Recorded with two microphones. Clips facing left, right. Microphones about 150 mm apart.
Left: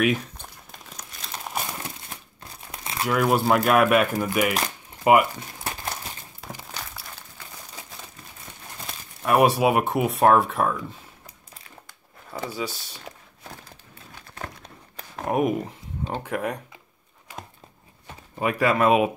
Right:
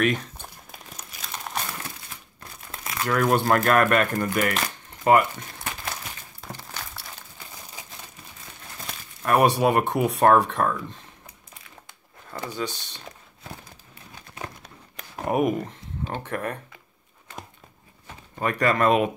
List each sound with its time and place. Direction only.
0.0 s crumpling: 5° left (ahead or behind)
2.8 s crumpling: 30° left (ahead or behind)
3.1 s speech: 5° left (ahead or behind)
5.6 s crumpling: 35° left (ahead or behind)
6.8 s a sound: centre (ahead or behind)
8.8 s speech: 5° left (ahead or behind)
12.3 s a sound: 10° left (ahead or behind)
15.1 s speech: centre (ahead or behind)
18.4 s speech: 5° left (ahead or behind)